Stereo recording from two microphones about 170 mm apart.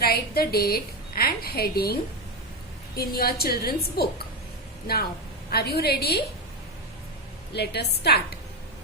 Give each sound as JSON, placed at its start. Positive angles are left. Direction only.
{"t": 0.0, "sound": "a woman's voice", "side_deg": 65}
{"t": 5.5, "sound": "a woman's voice", "side_deg": 70}
{"t": 7.5, "sound": "a woman's voice", "side_deg": 75}